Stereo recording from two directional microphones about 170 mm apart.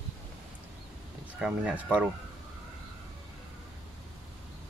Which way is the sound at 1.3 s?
5° right (ahead or behind).